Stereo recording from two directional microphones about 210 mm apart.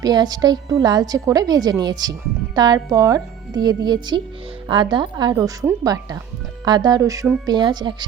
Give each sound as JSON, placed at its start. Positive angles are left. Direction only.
{"t": 0.0, "sound": "a woman's voice", "side_deg": -20}